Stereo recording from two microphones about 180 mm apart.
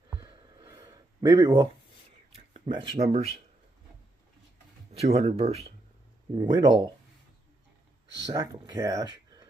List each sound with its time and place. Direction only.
0.2 s a sound: 25° right (ahead or behind)
2.3 s speech: 30° right (ahead or behind)
4.9 s speech: 35° right (ahead or behind)
6.3 s speech: 25° right (ahead or behind)
8.3 s speech: 20° right (ahead or behind)